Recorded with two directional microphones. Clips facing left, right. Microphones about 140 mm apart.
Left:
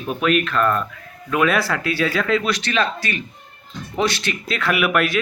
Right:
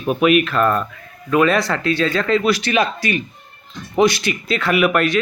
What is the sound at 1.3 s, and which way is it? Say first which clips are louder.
Speech: right 3 dB; 5° left (ahead or behind).